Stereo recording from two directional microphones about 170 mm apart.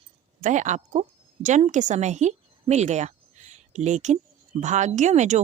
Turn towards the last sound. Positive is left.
turn(degrees=-45)  # may be behind; listen again after turning